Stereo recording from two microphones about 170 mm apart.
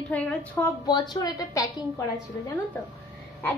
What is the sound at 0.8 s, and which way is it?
A child's voice, 25° left (ahead or behind).